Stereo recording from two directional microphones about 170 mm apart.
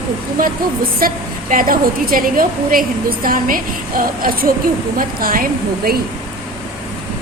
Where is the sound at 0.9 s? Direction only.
55° right (ahead or behind).